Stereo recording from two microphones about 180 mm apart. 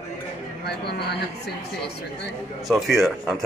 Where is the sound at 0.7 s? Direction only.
65° left (ahead or behind).